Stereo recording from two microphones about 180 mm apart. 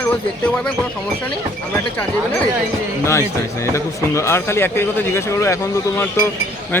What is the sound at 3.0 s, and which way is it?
Speech, 15° left (ahead or behind).